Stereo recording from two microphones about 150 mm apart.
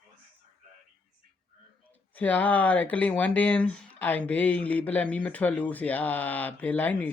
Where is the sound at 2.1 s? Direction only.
10° left (ahead or behind).